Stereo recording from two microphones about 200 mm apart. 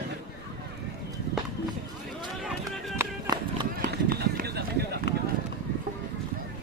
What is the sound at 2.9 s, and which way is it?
Music, 20° right (ahead or behind).